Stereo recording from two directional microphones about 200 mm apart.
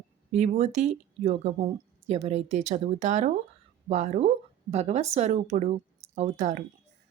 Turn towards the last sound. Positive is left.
turn(degrees=-35)  # may be behind; listen again after turning